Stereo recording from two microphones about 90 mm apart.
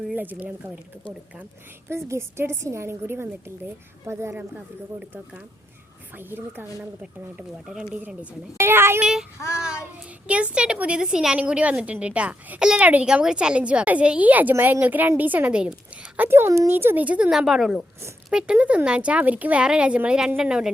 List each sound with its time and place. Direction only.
0.1 s a woman's voice: 20° right (ahead or behind)
1.9 s a woman's voice: 30° right (ahead or behind)
4.4 s a woman's voice: 15° right (ahead or behind)
6.1 s a woman's voice: 25° right (ahead or behind)
7.7 s a woman's voice: 10° right (ahead or behind)
8.5 s a child's voice: 25° right (ahead or behind)
9.0 s a woman's voice: 5° right (ahead or behind)
10.2 s a woman's voice: 15° right (ahead or behind)
17.3 s a woman's voice: centre (ahead or behind)